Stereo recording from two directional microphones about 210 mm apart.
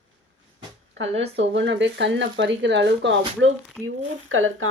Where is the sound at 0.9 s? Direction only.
65° right (ahead or behind).